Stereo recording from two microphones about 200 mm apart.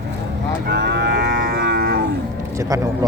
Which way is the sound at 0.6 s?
55° right (ahead or behind).